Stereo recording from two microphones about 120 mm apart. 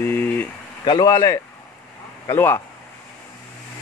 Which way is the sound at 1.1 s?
25° left (ahead or behind).